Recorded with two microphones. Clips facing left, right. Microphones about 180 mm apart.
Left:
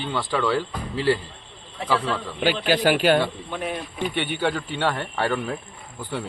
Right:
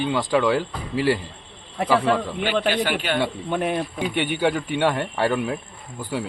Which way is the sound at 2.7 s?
40° left (ahead or behind).